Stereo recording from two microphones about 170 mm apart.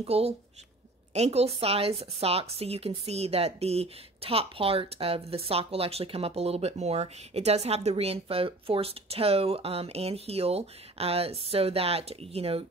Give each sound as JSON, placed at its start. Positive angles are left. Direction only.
{"t": 0.0, "sound": "a woman's voice", "side_deg": -35}